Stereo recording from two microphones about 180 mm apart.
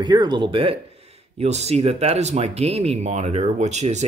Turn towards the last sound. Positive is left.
turn(degrees=-40)  # may be behind; listen again after turning